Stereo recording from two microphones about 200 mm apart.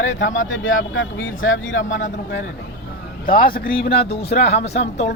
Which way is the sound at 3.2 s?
45° left (ahead or behind).